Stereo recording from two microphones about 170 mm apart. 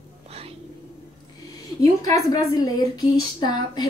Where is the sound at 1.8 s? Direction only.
20° left (ahead or behind).